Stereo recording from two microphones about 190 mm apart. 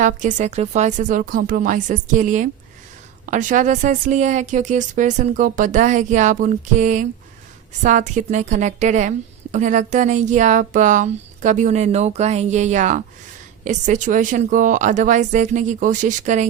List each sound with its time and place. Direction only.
0.0 s a woman's voice: 40° right (ahead or behind)